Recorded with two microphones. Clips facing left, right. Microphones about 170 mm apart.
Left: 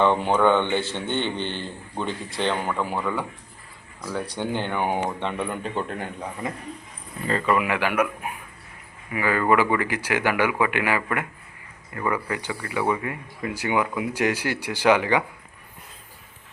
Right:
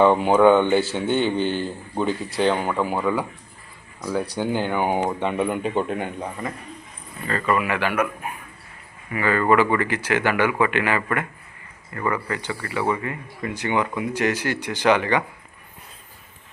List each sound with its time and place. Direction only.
0.0 s a man's voice: 5° right (ahead or behind)
4.4 s speech: 5° right (ahead or behind)
7.3 s speech: 15° left (ahead or behind)